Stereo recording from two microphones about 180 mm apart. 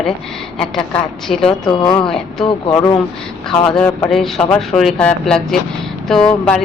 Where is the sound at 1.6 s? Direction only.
25° left (ahead or behind).